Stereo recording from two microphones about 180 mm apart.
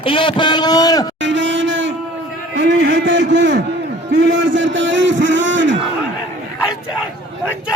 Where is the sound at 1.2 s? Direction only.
90° right.